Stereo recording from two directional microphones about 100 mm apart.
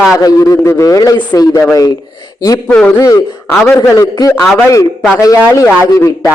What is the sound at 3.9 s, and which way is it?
A man's voice, 35° left (ahead or behind).